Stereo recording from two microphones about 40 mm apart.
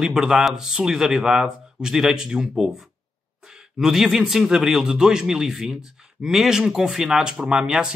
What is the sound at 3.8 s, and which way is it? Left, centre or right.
A man's voice, centre.